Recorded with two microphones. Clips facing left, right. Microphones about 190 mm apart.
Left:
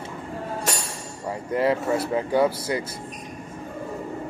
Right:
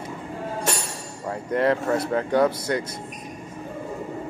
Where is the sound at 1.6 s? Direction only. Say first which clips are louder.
Right 1 dB; 5° left (ahead or behind).